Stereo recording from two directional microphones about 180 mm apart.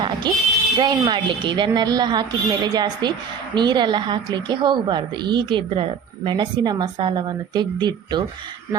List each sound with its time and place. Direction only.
0.3 s a woman's voice: 25° right (ahead or behind)